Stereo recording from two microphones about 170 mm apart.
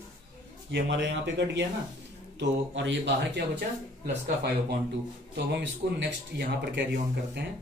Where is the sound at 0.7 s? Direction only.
90° right.